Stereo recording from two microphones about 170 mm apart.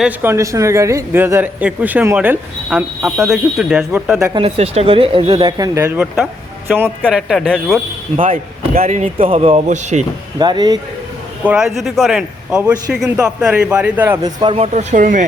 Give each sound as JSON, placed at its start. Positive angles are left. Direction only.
{"t": 0.0, "sound": "a man's voice", "side_deg": -10}
{"t": 4.4, "sound": "speech", "side_deg": -35}
{"t": 7.1, "sound": "a man's voice", "side_deg": 0}
{"t": 8.2, "sound": "speech", "side_deg": -50}
{"t": 8.8, "sound": "speech", "side_deg": -40}
{"t": 10.3, "sound": "speech", "side_deg": -25}
{"t": 11.4, "sound": "a man's voice", "side_deg": -5}
{"t": 14.2, "sound": "speech", "side_deg": -25}